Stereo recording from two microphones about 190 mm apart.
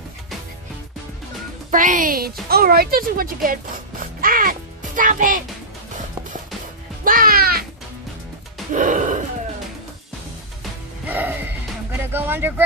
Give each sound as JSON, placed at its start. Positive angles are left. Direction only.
{"t": 1.7, "sound": "speech", "side_deg": -45}
{"t": 7.1, "sound": "music", "side_deg": -50}
{"t": 8.7, "sound": "gasp", "side_deg": -40}
{"t": 10.6, "sound": "music", "side_deg": -10}
{"t": 12.0, "sound": "speech", "side_deg": -10}